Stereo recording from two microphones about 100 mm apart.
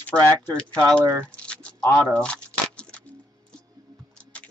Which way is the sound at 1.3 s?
10° left (ahead or behind).